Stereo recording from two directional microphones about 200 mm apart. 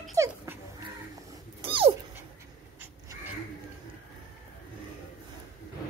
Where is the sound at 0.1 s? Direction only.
15° right (ahead or behind).